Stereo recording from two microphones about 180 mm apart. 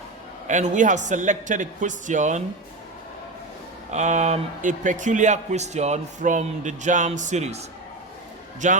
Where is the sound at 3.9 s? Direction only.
40° right (ahead or behind).